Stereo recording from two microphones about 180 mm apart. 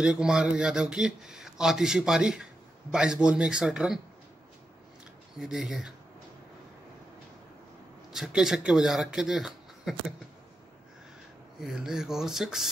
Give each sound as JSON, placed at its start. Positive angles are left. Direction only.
{"t": 0.0, "sound": "speech", "side_deg": -5}
{"t": 5.4, "sound": "speech", "side_deg": -5}
{"t": 8.1, "sound": "speech", "side_deg": -5}
{"t": 11.6, "sound": "speech", "side_deg": 0}